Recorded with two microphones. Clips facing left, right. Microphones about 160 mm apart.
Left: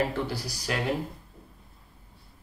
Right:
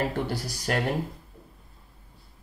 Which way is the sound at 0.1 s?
50° right (ahead or behind).